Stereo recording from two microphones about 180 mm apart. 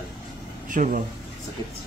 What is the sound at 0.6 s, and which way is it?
Speech, 45° right (ahead or behind).